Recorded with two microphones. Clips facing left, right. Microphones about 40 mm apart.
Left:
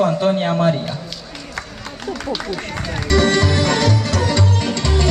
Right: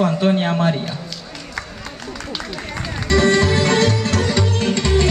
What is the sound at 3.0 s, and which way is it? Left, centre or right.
Music, right.